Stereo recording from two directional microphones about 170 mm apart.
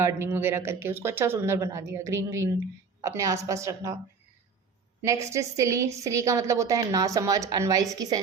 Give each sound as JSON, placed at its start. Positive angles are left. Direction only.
{"t": 0.0, "sound": "speech", "side_deg": -15}
{"t": 5.0, "sound": "a woman's voice", "side_deg": -20}